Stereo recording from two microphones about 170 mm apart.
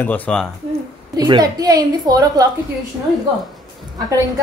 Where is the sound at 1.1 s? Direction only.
25° right (ahead or behind).